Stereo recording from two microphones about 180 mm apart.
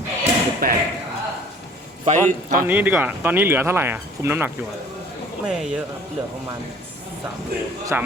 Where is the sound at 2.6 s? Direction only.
10° right (ahead or behind).